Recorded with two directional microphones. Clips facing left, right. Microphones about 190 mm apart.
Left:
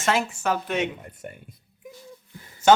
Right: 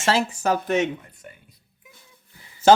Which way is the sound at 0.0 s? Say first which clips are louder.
Right 2 dB; 35° right (ahead or behind).